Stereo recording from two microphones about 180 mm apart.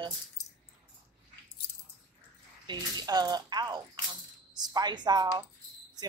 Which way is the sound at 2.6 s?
20° right (ahead or behind).